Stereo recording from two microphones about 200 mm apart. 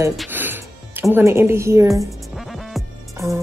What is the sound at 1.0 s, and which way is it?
Speech, 10° right (ahead or behind).